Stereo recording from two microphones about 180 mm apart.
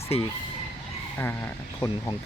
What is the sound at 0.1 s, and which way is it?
Speech, 35° left (ahead or behind).